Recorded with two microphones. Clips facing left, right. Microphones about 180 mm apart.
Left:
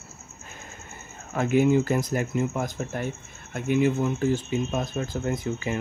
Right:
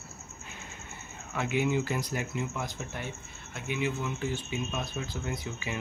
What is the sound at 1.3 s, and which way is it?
Speech, 45° left (ahead or behind).